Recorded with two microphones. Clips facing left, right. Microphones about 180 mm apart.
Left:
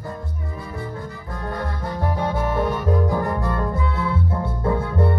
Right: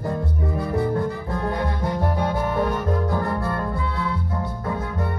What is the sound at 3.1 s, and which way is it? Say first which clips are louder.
Music: left 1 dB; 15° left (ahead or behind).